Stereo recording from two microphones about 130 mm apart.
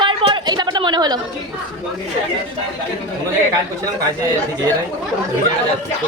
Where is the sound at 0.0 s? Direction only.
40° right (ahead or behind).